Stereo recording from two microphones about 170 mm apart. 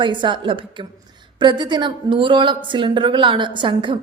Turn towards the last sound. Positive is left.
turn(degrees=-30)  # may be behind; listen again after turning